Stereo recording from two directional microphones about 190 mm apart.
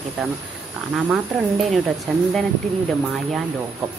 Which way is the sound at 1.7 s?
Centre (ahead or behind).